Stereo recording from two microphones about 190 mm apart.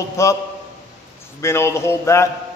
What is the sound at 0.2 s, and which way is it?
Speech, 15° left (ahead or behind).